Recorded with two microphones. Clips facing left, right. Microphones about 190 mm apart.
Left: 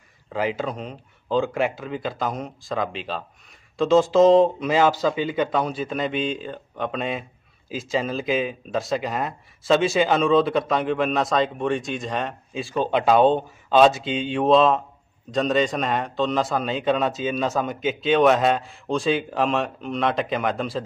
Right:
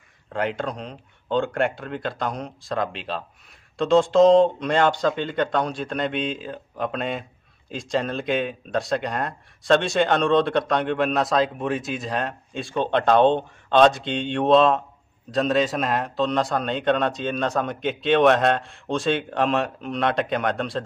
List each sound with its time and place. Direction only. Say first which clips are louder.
0.3 s a man's voice: left 1 dB; centre (ahead or behind)